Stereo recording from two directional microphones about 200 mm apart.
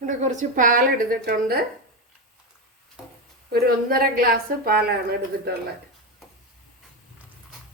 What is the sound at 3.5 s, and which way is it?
Speech, 50° right (ahead or behind).